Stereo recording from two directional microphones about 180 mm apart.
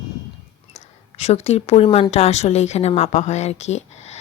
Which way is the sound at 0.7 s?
35° left (ahead or behind).